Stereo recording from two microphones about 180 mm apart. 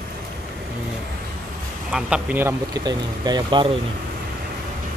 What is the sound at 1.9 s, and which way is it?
Speech, 5° right (ahead or behind).